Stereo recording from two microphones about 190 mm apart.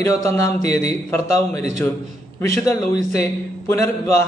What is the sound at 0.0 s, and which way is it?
A man's voice, 15° left (ahead or behind).